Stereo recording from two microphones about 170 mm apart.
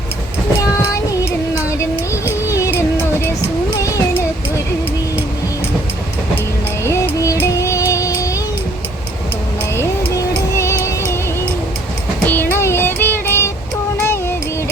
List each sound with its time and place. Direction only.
2.5 s music: 15° left (ahead or behind)
6.8 s music: 20° left (ahead or behind)
9.7 s music: 15° left (ahead or behind)
12.2 s music: 10° left (ahead or behind)